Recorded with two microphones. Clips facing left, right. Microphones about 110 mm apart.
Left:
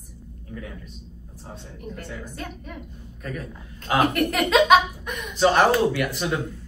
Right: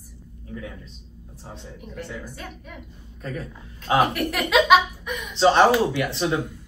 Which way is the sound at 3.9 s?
5° right (ahead or behind).